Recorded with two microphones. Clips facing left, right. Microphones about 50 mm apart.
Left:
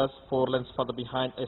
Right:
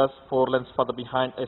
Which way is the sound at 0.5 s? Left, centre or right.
Centre.